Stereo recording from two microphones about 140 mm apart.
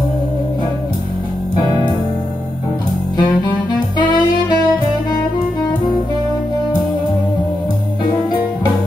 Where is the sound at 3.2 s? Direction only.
30° left (ahead or behind).